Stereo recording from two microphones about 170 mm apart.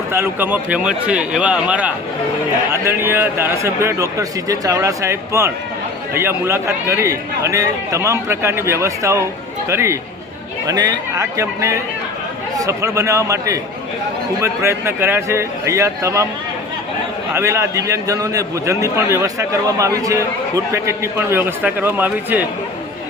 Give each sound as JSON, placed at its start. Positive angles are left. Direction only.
{"t": 0.1, "sound": "a man's voice", "side_deg": -15}
{"t": 17.3, "sound": "a man's voice", "side_deg": -15}